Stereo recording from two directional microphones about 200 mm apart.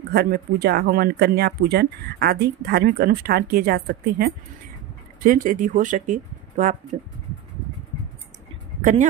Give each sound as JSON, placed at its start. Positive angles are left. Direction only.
{"t": 0.1, "sound": "speech", "side_deg": -55}